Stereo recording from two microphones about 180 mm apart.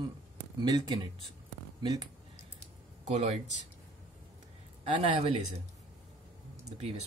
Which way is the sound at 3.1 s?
40° right (ahead or behind).